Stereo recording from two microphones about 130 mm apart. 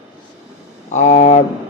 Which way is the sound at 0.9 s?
65° left (ahead or behind).